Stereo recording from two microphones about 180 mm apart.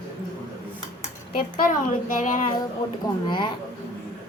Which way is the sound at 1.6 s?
50° left (ahead or behind).